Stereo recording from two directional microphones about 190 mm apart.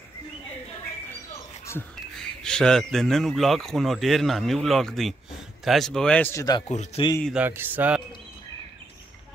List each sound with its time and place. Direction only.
2.1 s speech: 5° left (ahead or behind)
6.7 s speech: 35° left (ahead or behind)
7.3 s speech: 10° right (ahead or behind)